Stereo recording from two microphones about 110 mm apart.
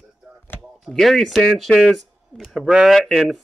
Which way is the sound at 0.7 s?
5° left (ahead or behind).